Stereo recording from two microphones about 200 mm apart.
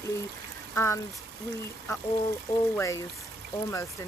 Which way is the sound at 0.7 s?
15° left (ahead or behind).